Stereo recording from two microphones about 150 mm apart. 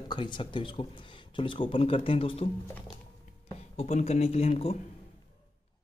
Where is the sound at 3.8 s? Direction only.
45° left (ahead or behind).